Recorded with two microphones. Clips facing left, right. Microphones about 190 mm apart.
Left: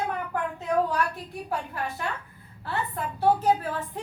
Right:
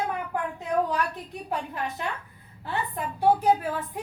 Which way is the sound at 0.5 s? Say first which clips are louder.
Left 1 dB; 20° right (ahead or behind).